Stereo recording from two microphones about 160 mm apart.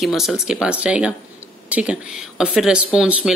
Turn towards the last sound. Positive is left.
turn(degrees=-5)  # may be behind; listen again after turning